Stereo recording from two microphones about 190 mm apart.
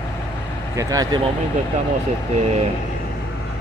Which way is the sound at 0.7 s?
20° right (ahead or behind).